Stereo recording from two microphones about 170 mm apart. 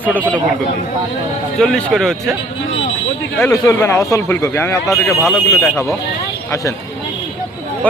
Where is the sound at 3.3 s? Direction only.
15° left (ahead or behind).